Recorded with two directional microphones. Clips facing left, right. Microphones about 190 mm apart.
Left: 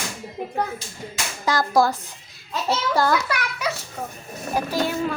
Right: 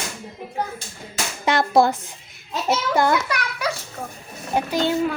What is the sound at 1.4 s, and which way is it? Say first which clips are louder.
Speech: right 2 dB; 25° right (ahead or behind).